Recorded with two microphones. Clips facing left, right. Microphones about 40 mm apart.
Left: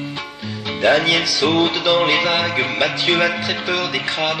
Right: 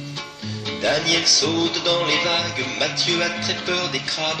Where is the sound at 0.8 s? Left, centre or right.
Left.